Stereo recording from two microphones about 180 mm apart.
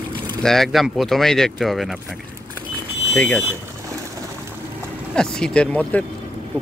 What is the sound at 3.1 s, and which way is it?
Speech, 5° left (ahead or behind).